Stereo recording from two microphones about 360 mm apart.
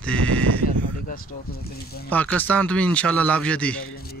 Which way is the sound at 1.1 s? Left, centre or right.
Left.